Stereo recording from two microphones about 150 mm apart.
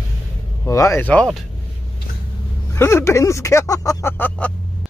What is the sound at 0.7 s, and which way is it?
Speech, 20° left (ahead or behind).